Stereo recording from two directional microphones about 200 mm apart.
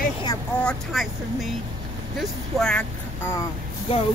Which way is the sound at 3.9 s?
25° left (ahead or behind).